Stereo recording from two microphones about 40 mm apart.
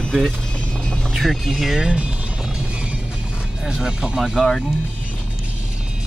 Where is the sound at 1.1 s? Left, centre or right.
Centre.